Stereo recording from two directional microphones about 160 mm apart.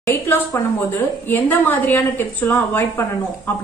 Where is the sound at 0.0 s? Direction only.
15° left (ahead or behind).